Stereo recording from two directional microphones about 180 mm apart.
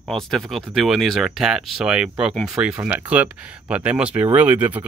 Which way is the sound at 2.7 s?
15° right (ahead or behind).